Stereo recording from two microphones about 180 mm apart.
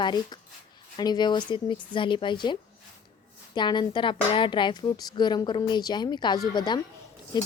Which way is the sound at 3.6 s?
25° left (ahead or behind).